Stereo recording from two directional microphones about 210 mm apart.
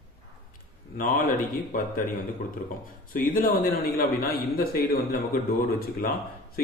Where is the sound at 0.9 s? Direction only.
40° left (ahead or behind).